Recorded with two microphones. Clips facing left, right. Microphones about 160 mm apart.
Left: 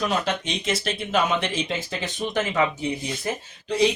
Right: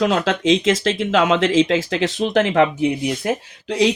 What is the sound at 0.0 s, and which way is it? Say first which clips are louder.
Speech: right 7 dB; 90° right.